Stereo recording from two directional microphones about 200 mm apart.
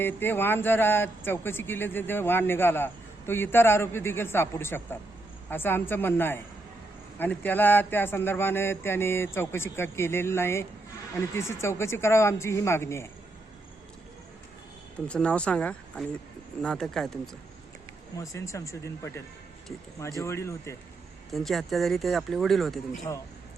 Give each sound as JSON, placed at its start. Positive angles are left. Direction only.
{"t": 0.0, "sound": "speech", "side_deg": 10}
{"t": 15.0, "sound": "speech", "side_deg": 5}
{"t": 18.2, "sound": "speech", "side_deg": 15}
{"t": 21.2, "sound": "speech", "side_deg": 0}
{"t": 23.1, "sound": "speech", "side_deg": 15}